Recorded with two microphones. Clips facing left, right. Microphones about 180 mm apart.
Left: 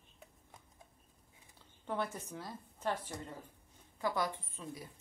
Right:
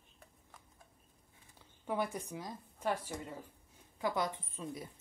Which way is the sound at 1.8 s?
10° right (ahead or behind).